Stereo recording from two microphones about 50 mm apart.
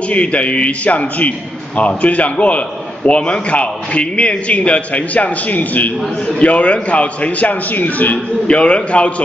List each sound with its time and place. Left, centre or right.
0.1 s a man's voice: left